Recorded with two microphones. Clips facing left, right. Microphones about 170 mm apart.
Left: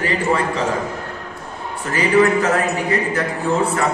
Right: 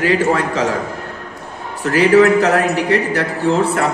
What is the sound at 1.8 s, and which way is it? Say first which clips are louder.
A man's voice: right 5 dB; 70° right (ahead or behind).